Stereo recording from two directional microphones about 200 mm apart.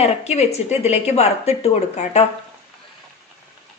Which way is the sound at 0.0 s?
35° left (ahead or behind).